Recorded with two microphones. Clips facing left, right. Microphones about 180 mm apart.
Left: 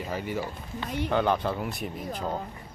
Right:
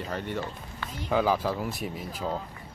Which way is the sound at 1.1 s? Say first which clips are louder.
Right 1 dB; centre (ahead or behind).